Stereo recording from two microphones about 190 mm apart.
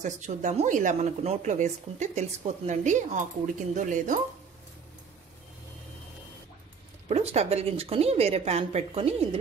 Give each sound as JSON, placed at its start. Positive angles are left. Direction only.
{"t": 0.0, "sound": "speech", "side_deg": -40}
{"t": 7.1, "sound": "speech", "side_deg": -35}